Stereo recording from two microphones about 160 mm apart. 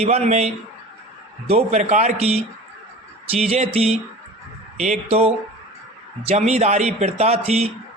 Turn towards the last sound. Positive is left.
turn(degrees=-40)  # may be behind; listen again after turning